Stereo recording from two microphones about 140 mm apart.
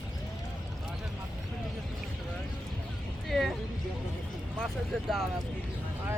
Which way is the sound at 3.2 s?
Centre (ahead or behind).